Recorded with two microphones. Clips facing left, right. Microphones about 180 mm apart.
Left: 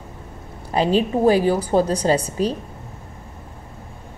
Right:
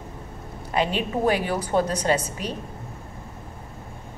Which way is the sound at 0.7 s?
35° left (ahead or behind).